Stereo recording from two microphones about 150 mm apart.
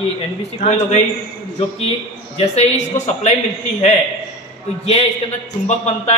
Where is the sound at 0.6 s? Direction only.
50° left (ahead or behind).